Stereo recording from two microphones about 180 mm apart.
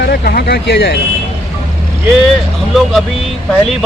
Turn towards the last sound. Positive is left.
turn(degrees=0)  # may be behind; listen again after turning